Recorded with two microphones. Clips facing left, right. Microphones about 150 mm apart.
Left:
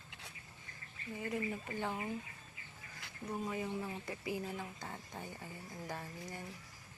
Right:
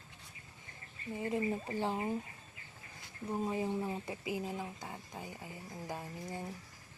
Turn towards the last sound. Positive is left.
turn(degrees=-20)  # may be behind; listen again after turning